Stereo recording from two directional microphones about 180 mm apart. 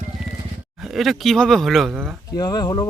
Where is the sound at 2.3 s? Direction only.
20° left (ahead or behind).